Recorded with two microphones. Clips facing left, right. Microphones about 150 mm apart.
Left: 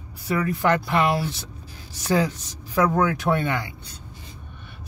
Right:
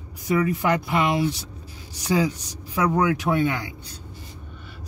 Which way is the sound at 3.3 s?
5° left (ahead or behind).